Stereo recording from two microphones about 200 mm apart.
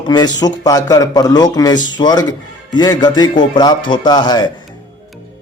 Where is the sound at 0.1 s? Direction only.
20° left (ahead or behind).